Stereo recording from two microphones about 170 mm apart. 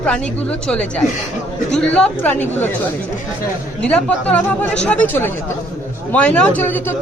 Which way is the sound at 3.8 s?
5° left (ahead or behind).